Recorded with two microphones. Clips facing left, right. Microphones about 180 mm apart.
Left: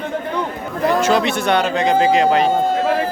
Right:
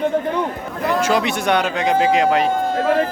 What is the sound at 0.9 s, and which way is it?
Speech, 10° right (ahead or behind).